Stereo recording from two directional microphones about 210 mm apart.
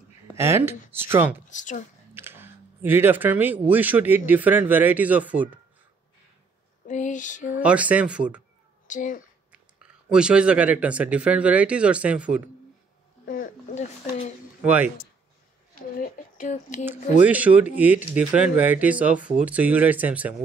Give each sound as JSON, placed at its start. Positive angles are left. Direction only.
{"t": 0.4, "sound": "speech", "side_deg": -10}
{"t": 1.5, "sound": "speech", "side_deg": 35}
{"t": 2.1, "sound": "speech", "side_deg": -10}
{"t": 6.9, "sound": "speech", "side_deg": 35}
{"t": 7.6, "sound": "speech", "side_deg": -5}
{"t": 8.8, "sound": "speech", "side_deg": 40}
{"t": 9.5, "sound": "speech", "side_deg": -5}
{"t": 13.2, "sound": "speech", "side_deg": 40}
{"t": 14.6, "sound": "speech", "side_deg": -5}
{"t": 16.0, "sound": "speech", "side_deg": 35}
{"t": 17.2, "sound": "speech", "side_deg": -5}